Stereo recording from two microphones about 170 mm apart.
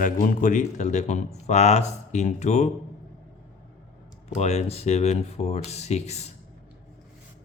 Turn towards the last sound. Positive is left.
turn(degrees=40)  # may be behind; listen again after turning